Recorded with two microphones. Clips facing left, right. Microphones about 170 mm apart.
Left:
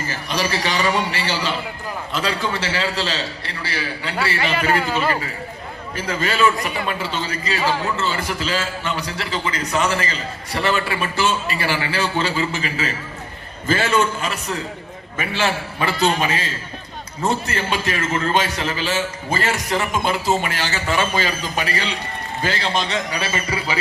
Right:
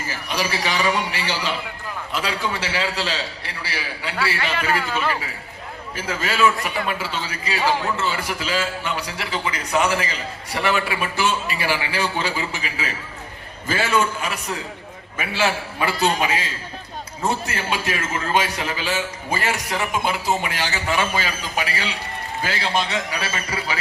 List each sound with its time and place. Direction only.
0.1 s a man's voice: 10° right (ahead or behind)
4.7 s a man's voice: 35° left (ahead or behind)
6.0 s a man's voice: 5° right (ahead or behind)